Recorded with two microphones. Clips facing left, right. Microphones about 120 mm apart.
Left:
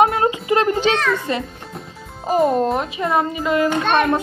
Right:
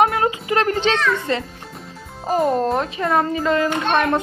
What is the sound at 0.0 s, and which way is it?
Music, 25° left (ahead or behind).